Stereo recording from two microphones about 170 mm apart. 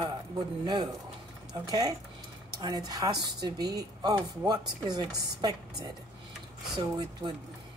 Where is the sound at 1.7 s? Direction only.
25° right (ahead or behind).